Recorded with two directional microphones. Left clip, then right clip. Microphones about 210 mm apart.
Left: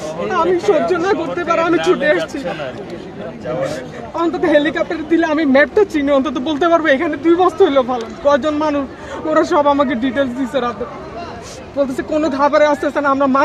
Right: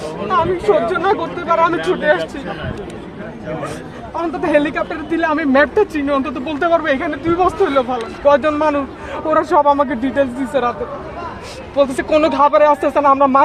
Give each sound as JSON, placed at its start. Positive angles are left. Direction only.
{"t": 0.9, "sound": "speech", "side_deg": 20}
{"t": 4.1, "sound": "speech", "side_deg": 20}
{"t": 11.8, "sound": "speech", "side_deg": 20}